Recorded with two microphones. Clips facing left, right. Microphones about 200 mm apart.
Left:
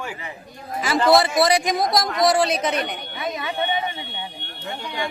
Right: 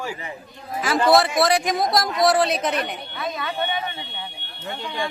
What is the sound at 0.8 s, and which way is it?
A man's voice, centre (ahead or behind).